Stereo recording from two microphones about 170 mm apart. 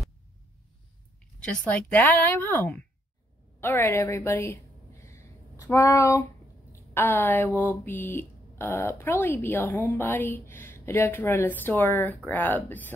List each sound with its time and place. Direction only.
1.4 s speech: 5° left (ahead or behind)
5.0 s a sound: 15° left (ahead or behind)
6.7 s speech: 15° left (ahead or behind)